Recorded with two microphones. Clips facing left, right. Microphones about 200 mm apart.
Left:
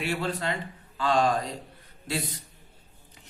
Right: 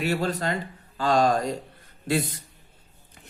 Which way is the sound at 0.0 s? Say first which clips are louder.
Right 4 dB; 40° right (ahead or behind).